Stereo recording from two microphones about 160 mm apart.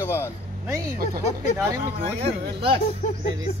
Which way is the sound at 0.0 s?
15° left (ahead or behind).